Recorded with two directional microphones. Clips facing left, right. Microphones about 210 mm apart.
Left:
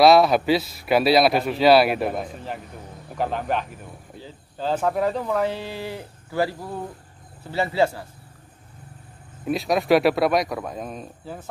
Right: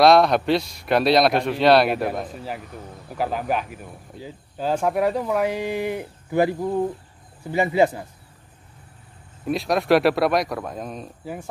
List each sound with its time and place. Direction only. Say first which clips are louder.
0.0 s a man's voice: even; 5° left (ahead or behind); by 8.1 s 15° right (ahead or behind)
9.4 s a man's voice: even; centre (ahead or behind)